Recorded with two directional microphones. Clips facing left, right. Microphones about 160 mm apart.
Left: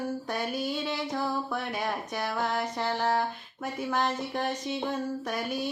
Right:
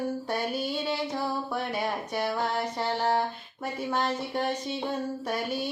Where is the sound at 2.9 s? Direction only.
20° right (ahead or behind).